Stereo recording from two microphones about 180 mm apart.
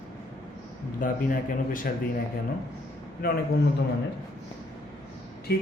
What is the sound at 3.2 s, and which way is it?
Speech, 55° left (ahead or behind).